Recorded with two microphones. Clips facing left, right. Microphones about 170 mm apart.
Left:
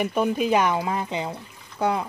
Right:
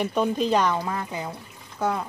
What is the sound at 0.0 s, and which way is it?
Speech, 10° left (ahead or behind).